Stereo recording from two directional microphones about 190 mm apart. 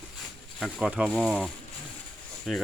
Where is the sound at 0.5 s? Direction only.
Centre (ahead or behind).